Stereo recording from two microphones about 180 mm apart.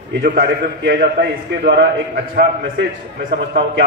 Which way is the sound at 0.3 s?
65° right (ahead or behind).